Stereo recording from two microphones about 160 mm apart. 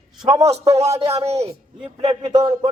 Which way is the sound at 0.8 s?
20° right (ahead or behind).